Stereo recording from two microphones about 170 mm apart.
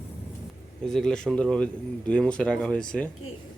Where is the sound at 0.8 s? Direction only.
5° left (ahead or behind).